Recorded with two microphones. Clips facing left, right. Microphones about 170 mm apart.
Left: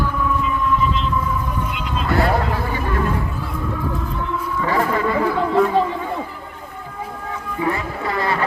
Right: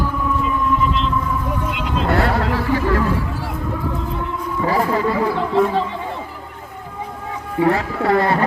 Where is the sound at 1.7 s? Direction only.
70° right (ahead or behind); by 3.0 s 90° right.